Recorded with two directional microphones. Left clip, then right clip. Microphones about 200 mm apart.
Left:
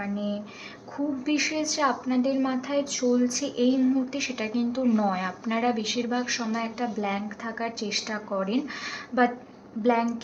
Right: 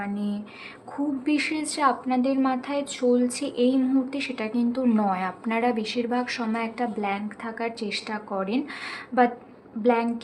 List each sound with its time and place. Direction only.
0.0 s speech: 20° right (ahead or behind)